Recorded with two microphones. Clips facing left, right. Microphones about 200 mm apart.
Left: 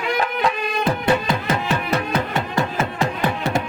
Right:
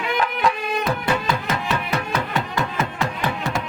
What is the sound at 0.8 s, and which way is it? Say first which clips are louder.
Music: left 4 dB; 30° left (ahead or behind).